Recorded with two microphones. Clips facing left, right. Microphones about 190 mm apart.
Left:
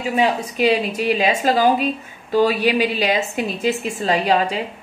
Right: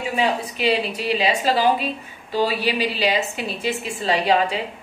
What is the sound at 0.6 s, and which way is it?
A woman's voice, 45° left (ahead or behind).